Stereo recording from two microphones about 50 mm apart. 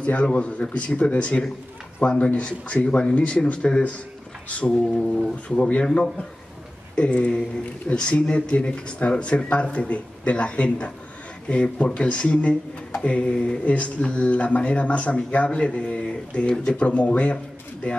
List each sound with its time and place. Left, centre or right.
0.0 s speech: left
7.0 s speech: left